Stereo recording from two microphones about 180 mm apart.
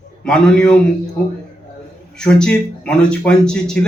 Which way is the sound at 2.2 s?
5° left (ahead or behind).